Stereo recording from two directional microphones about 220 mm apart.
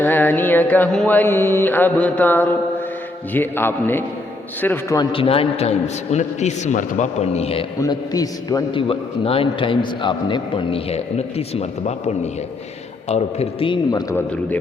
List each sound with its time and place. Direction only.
0.0 s mantra: 10° left (ahead or behind)
5.1 s a man's voice: 25° left (ahead or behind)
7.8 s a man's voice: 15° left (ahead or behind)